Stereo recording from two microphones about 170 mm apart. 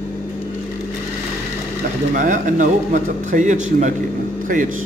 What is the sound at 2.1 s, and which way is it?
Speech, 50° right (ahead or behind).